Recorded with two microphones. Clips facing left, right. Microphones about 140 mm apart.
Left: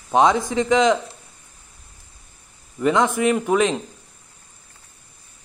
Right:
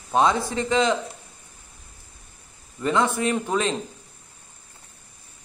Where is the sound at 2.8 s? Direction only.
15° left (ahead or behind).